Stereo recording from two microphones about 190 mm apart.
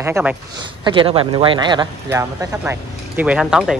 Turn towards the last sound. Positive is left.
turn(degrees=-5)  # may be behind; listen again after turning